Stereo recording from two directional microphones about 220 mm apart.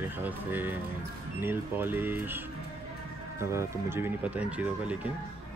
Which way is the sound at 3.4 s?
10° right (ahead or behind).